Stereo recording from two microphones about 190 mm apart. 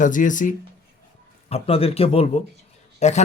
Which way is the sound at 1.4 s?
30° left (ahead or behind).